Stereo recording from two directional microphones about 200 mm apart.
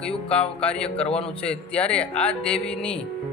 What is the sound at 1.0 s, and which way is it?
Speech, 30° left (ahead or behind).